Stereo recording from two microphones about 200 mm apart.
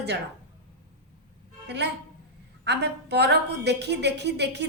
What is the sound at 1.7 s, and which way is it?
A woman's voice, 60° right (ahead or behind).